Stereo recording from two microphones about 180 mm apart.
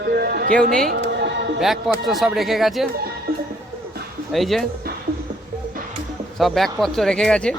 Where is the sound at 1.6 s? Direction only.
Centre (ahead or behind).